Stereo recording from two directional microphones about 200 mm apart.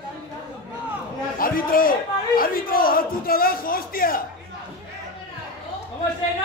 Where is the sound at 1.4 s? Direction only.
45° left (ahead or behind).